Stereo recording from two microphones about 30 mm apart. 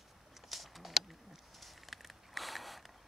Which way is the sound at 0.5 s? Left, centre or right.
Centre.